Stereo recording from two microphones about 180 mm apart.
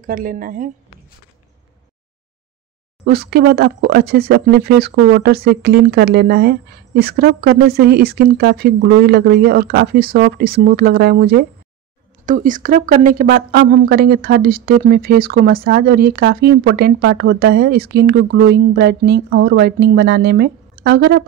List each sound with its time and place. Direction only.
0.0 s a woman's voice: 50° right (ahead or behind)
3.1 s a woman's voice: 60° right (ahead or behind)
12.3 s a woman's voice: 45° right (ahead or behind); by 21.2 s 65° right (ahead or behind)